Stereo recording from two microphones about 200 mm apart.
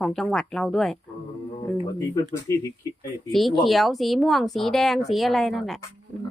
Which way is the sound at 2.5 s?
15° left (ahead or behind).